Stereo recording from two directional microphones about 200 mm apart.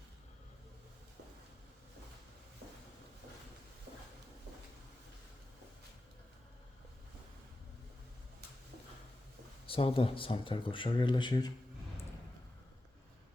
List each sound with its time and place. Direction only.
9.6 s speech: 25° left (ahead or behind)